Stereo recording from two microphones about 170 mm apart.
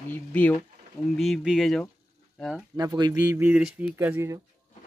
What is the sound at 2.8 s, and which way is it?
Speech, 25° right (ahead or behind).